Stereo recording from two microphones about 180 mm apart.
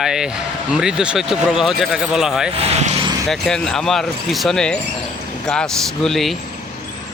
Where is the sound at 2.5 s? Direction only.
35° right (ahead or behind).